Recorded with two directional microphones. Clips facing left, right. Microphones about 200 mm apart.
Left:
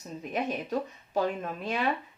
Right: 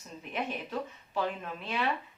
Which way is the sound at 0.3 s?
45° left (ahead or behind).